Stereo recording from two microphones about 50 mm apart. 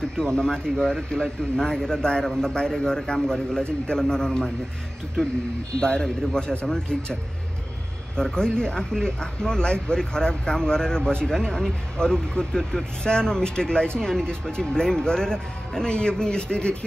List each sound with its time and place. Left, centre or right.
0.2 s speech: centre
5.8 s speech: centre
8.2 s speech: centre